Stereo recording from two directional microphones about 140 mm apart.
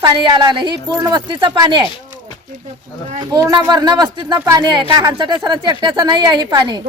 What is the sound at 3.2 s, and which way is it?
Speech, 25° right (ahead or behind).